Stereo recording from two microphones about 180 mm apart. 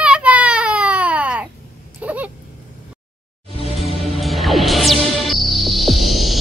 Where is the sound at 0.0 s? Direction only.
5° right (ahead or behind).